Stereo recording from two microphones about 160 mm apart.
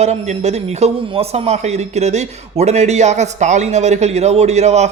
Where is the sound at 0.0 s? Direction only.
45° right (ahead or behind).